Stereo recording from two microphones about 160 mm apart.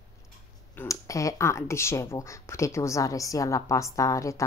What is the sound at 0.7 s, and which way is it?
Speech, 20° left (ahead or behind).